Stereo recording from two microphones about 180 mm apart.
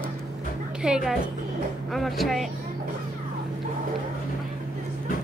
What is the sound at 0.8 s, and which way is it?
A woman's voice, 5° right (ahead or behind).